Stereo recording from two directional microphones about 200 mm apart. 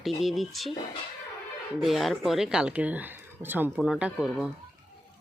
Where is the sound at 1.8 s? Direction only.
Centre (ahead or behind).